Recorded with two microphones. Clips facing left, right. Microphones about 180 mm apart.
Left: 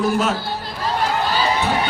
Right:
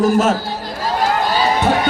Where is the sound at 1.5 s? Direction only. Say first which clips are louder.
Right 5 dB; 45° right (ahead or behind).